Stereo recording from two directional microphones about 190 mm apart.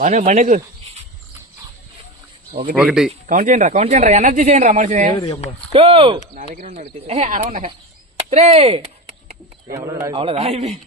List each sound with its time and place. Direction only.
0.0 s speech: 40° right (ahead or behind)
2.8 s speech: 5° right (ahead or behind)
3.1 s speech: 40° right (ahead or behind)
5.7 s speech: 30° right (ahead or behind)
9.7 s speech: 15° right (ahead or behind)
10.1 s speech: 30° right (ahead or behind)